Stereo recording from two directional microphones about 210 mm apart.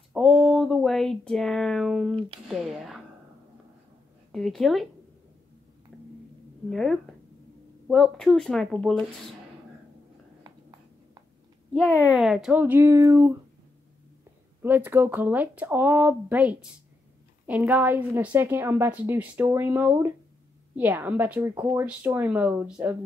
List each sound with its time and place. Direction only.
0.1 s a sound: centre (ahead or behind)
2.4 s speech: centre (ahead or behind)
4.3 s speech: centre (ahead or behind)
6.7 s speech: centre (ahead or behind)
10.4 s a sound: 15° right (ahead or behind)
12.1 s a woman's voice: centre (ahead or behind)
14.6 s a woman's voice: 10° right (ahead or behind)